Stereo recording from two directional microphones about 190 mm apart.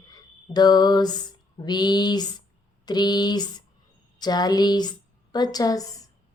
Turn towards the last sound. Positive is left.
turn(degrees=20)  # may be behind; listen again after turning